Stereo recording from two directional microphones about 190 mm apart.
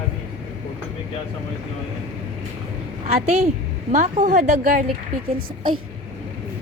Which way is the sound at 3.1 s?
35° right (ahead or behind).